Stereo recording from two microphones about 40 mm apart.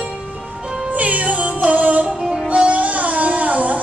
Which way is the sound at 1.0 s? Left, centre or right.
Right.